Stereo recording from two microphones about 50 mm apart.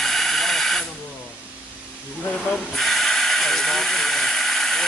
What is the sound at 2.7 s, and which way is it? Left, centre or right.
Hiss, centre.